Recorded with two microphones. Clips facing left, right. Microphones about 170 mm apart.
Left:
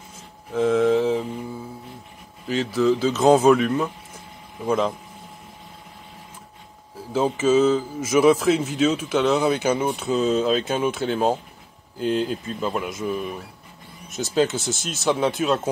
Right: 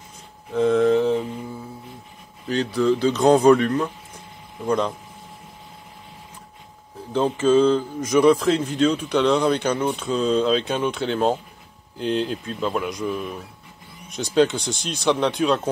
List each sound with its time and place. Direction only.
0.5 s a sound: centre (ahead or behind)
2.4 s a man's voice: centre (ahead or behind)
7.1 s a man's voice: 5° left (ahead or behind)